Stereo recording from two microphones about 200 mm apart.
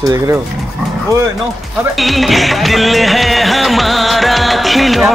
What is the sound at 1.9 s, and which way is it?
Music, centre (ahead or behind).